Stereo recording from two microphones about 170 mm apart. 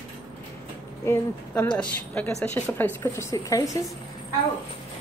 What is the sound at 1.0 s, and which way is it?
Speech, 10° left (ahead or behind).